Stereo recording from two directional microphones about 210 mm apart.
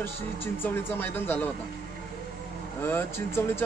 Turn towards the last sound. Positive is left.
turn(degrees=10)  # may be behind; listen again after turning